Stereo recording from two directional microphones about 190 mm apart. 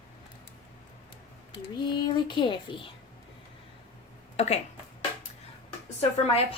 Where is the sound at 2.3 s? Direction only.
25° left (ahead or behind).